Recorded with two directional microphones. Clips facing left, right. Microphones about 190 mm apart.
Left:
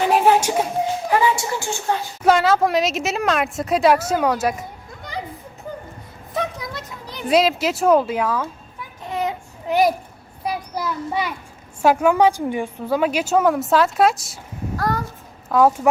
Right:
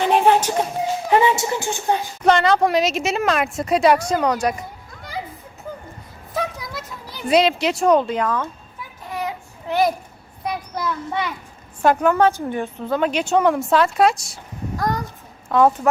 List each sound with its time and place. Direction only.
0.0 s a sound: 5° left (ahead or behind)
1.1 s a woman's voice: 25° right (ahead or behind)
2.2 s a woman's voice: 5° left (ahead or behind)
6.3 s a sound: centre (ahead or behind)
9.0 s child singing: 25° left (ahead or behind)
10.4 s a sound: 5° left (ahead or behind)
11.8 s a woman's voice: 10° left (ahead or behind)
14.8 s a child's voice: 15° right (ahead or behind)
15.4 s a woman's voice: 5° left (ahead or behind)